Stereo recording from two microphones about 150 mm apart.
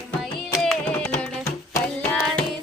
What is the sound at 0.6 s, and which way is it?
Music, 5° left (ahead or behind).